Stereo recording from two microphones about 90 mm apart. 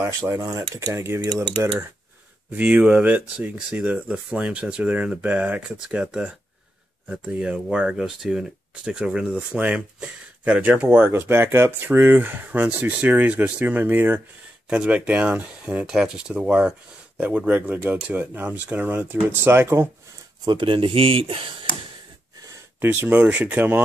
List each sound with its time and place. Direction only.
0.0 s speech: 40° right (ahead or behind)
2.5 s speech: 20° right (ahead or behind)
20.4 s speech: 65° right (ahead or behind)
22.8 s speech: 20° right (ahead or behind)